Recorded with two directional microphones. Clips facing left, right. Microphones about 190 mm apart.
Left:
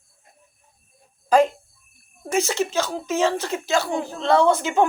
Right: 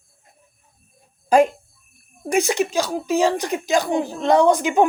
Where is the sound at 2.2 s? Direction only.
15° right (ahead or behind).